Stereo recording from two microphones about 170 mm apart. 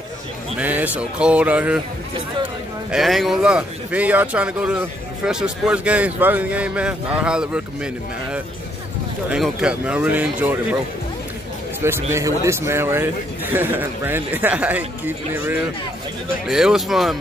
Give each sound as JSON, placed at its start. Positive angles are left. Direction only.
{"t": 0.6, "sound": "a man's voice", "side_deg": -10}
{"t": 11.8, "sound": "a man's voice", "side_deg": -15}